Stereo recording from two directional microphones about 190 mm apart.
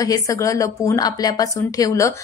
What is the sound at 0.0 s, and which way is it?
A woman's voice, 15° left (ahead or behind).